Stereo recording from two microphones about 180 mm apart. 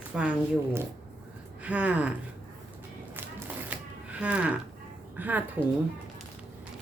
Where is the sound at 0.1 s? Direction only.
5° right (ahead or behind).